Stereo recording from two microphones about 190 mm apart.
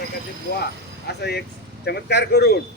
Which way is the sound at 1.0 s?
60° left (ahead or behind).